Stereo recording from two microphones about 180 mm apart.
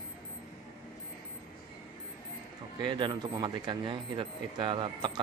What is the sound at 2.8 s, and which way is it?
Speech, 25° right (ahead or behind).